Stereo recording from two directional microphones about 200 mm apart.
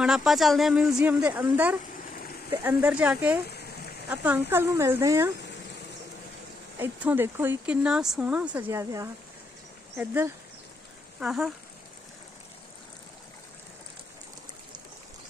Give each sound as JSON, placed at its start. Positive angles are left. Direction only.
{"t": 0.0, "sound": "speech", "side_deg": -5}
{"t": 3.4, "sound": "a sound", "side_deg": 55}
{"t": 4.1, "sound": "speech", "side_deg": -10}
{"t": 6.8, "sound": "speech", "side_deg": -10}